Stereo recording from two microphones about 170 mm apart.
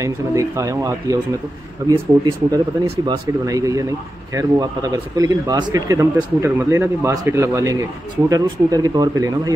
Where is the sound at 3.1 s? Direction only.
20° right (ahead or behind).